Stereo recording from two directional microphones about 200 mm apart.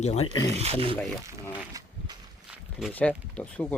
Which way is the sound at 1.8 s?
15° right (ahead or behind).